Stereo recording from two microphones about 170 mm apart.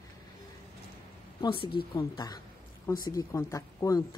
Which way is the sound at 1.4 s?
30° left (ahead or behind).